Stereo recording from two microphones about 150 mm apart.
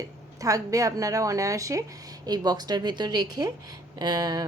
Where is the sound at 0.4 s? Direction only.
20° right (ahead or behind).